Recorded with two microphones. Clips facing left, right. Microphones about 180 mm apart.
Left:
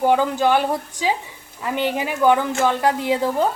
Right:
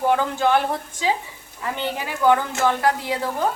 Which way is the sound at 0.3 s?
15° left (ahead or behind).